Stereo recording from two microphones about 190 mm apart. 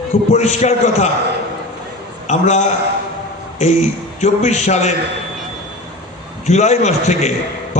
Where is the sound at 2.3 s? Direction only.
35° left (ahead or behind).